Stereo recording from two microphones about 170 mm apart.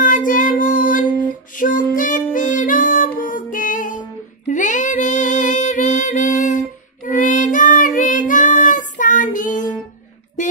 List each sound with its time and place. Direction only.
0.0 s child singing: 50° left (ahead or behind)
1.6 s music: 50° left (ahead or behind)
7.1 s child singing: 50° left (ahead or behind)
10.4 s music: 45° left (ahead or behind)